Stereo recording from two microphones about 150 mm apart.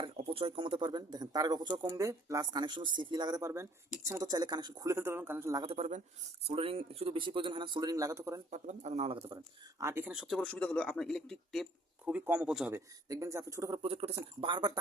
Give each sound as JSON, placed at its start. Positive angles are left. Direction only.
{"t": 0.0, "sound": "speech", "side_deg": -35}
{"t": 5.6, "sound": "speech", "side_deg": -45}
{"t": 8.4, "sound": "speech", "side_deg": -50}
{"t": 9.8, "sound": "a man's voice", "side_deg": -15}
{"t": 12.0, "sound": "speech", "side_deg": -10}
{"t": 12.7, "sound": "speech", "side_deg": -20}
{"t": 13.7, "sound": "speech", "side_deg": -40}